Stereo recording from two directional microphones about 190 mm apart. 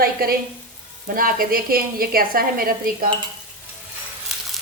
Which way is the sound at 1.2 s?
50° right (ahead or behind).